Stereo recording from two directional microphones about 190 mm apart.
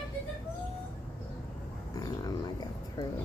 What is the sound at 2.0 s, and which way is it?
Speech, 20° left (ahead or behind).